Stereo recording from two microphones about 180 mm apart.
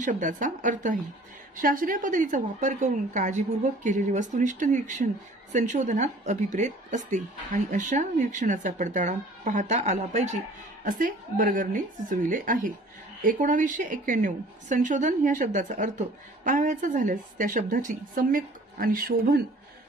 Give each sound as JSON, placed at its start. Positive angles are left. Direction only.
{"t": 0.0, "sound": "a woman's voice", "side_deg": -45}